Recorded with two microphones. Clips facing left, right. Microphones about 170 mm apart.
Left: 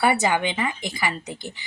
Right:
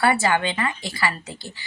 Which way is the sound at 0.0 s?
20° left (ahead or behind).